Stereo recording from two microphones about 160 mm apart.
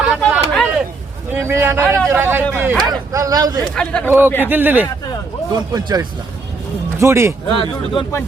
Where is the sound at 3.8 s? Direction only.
5° left (ahead or behind).